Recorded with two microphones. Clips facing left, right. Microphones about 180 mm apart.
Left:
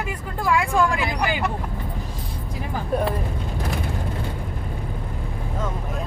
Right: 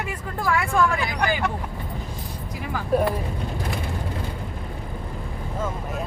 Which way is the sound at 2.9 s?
Centre (ahead or behind).